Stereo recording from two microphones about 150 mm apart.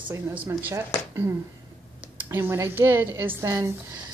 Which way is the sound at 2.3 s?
15° right (ahead or behind).